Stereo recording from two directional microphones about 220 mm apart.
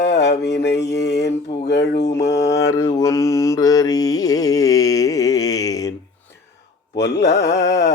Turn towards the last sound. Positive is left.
turn(degrees=50)  # may be behind; listen again after turning